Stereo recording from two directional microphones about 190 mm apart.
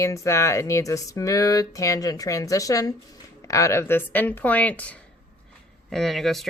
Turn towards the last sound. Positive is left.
turn(degrees=0)  # may be behind; listen again after turning